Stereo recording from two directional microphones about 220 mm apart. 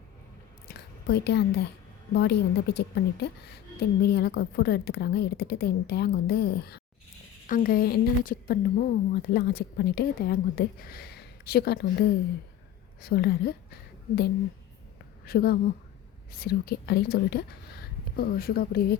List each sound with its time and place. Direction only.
0.7 s a sound: 50° left (ahead or behind)
2.1 s a woman's voice: 50° left (ahead or behind)
15.3 s a woman's voice: 45° left (ahead or behind)